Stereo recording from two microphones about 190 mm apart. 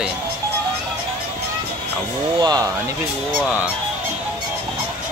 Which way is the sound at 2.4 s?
20° right (ahead or behind).